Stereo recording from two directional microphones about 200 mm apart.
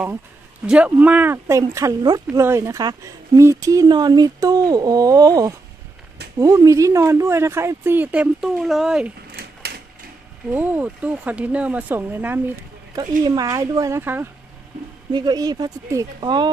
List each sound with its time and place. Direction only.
0.7 s speech: 5° right (ahead or behind)
9.3 s typewriter: 50° right (ahead or behind)
10.5 s speech: 10° right (ahead or behind)